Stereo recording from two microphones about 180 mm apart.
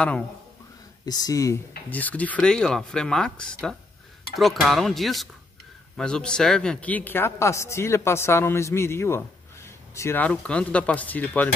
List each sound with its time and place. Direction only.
1.0 s speech: 20° left (ahead or behind)